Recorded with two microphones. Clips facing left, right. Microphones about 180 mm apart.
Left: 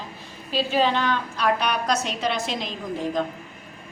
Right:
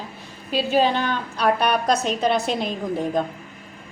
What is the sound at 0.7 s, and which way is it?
A woman's voice, 45° right (ahead or behind).